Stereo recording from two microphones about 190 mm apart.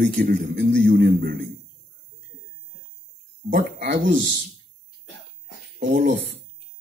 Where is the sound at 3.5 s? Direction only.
45° right (ahead or behind).